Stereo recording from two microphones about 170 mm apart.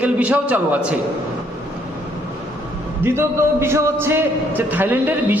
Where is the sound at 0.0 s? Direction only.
10° right (ahead or behind).